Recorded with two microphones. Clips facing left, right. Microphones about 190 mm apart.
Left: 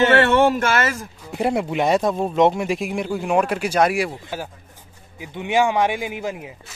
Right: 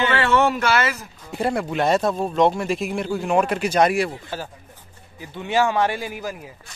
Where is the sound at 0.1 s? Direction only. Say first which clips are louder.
Left 4 dB; 65° left (ahead or behind).